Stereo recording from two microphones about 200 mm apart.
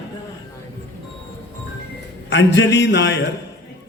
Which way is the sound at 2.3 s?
60° left (ahead or behind).